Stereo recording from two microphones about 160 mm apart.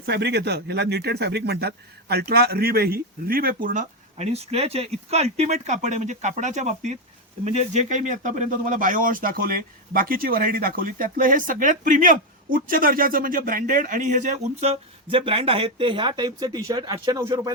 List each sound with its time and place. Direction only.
0.0 s speech: 90° right; by 3.8 s 60° right (ahead or behind)
4.2 s speech: 40° right (ahead or behind); by 17.5 s 25° right (ahead or behind)